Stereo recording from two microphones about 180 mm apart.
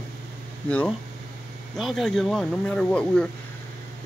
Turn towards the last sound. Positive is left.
turn(degrees=5)  # may be behind; listen again after turning